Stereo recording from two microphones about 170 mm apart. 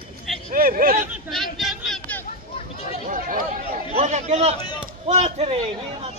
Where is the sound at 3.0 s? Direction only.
55° right (ahead or behind).